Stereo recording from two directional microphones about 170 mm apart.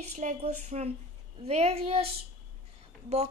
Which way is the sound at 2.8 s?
40° right (ahead or behind).